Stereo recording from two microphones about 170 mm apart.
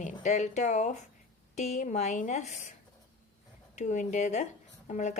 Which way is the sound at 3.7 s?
45° left (ahead or behind).